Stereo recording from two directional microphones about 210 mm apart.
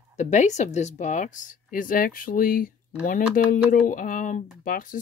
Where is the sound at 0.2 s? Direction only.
35° left (ahead or behind).